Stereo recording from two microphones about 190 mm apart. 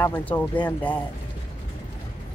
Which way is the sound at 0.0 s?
10° left (ahead or behind).